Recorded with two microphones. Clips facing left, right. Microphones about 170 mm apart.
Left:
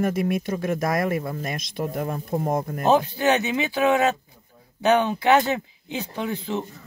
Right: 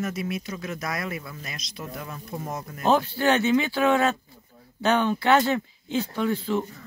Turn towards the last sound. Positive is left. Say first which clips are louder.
# right 2 dB
turn(degrees=20)  # may be behind; listen again after turning